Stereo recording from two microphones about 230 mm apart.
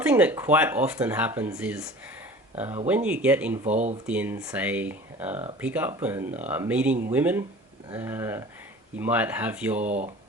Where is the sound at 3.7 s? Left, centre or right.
Right.